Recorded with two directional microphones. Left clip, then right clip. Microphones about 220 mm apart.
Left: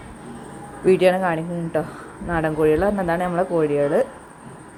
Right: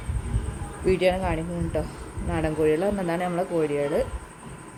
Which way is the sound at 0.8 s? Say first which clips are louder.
Left 6 dB; 10° left (ahead or behind).